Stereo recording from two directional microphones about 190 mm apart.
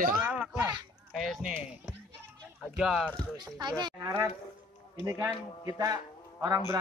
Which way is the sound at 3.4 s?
20° right (ahead or behind).